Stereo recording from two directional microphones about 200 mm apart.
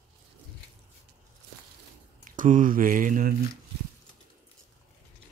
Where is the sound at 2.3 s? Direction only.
40° right (ahead or behind).